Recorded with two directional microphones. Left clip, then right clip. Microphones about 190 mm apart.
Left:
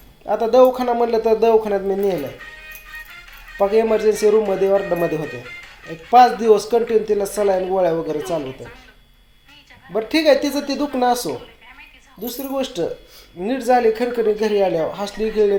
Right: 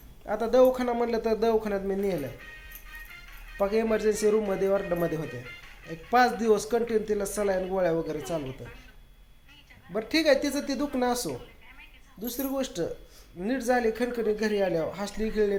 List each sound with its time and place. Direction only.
0.3 s speech: 5° left (ahead or behind)
2.6 s music: 45° left (ahead or behind)
3.6 s speech: 5° left (ahead or behind)
5.2 s speech: 40° left (ahead or behind)
6.1 s speech: centre (ahead or behind)
9.9 s speech: 5° left (ahead or behind)